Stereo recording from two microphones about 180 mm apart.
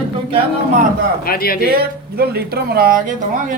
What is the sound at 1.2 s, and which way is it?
Speech, 55° left (ahead or behind).